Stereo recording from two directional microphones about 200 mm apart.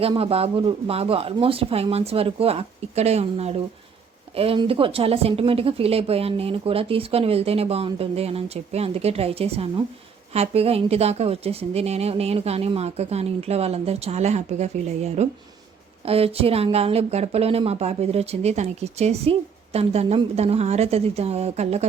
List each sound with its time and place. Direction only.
0.0 s speech: 30° right (ahead or behind)